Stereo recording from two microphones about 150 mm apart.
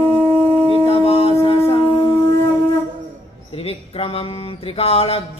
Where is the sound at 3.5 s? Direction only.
40° left (ahead or behind).